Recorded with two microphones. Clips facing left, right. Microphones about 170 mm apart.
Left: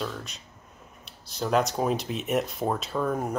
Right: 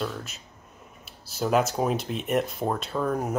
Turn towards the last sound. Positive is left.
turn(degrees=0)  # may be behind; listen again after turning